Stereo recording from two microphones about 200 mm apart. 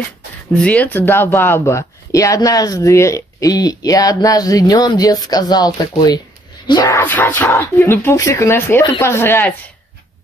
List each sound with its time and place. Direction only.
0.6 s speech: 5° left (ahead or behind)
7.0 s speech: 10° left (ahead or behind)